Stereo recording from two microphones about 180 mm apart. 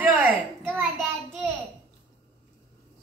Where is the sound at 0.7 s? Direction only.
10° right (ahead or behind).